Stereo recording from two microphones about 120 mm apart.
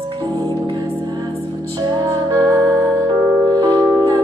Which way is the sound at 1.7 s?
30° right (ahead or behind).